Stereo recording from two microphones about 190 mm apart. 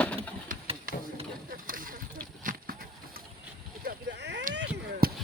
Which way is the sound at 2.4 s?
45° right (ahead or behind).